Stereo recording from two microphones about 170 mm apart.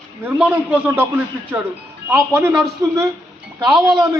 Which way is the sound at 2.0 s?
15° right (ahead or behind).